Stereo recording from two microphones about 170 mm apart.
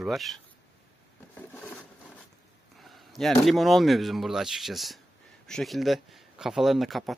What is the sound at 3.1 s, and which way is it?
Speech, centre (ahead or behind).